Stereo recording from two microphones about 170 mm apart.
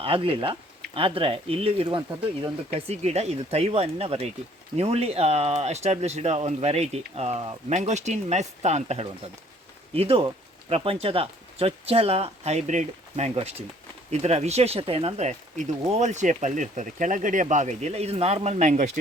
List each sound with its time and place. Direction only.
0.0 s speech: 30° right (ahead or behind)